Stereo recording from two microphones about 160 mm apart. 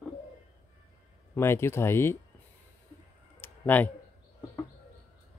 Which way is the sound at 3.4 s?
10° left (ahead or behind).